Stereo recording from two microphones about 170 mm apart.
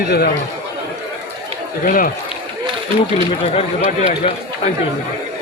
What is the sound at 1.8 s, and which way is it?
Speech, 55° left (ahead or behind).